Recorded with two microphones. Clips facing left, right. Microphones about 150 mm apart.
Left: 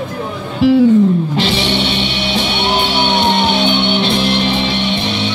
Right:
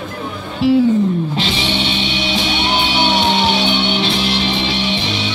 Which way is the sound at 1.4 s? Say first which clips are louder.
Left 4 dB; 65° left (ahead or behind).